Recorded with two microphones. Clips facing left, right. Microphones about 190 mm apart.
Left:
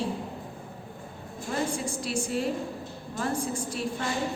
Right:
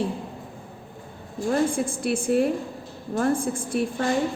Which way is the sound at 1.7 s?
55° right (ahead or behind).